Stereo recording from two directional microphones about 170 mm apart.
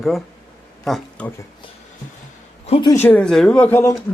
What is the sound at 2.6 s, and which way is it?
Speech, 35° left (ahead or behind).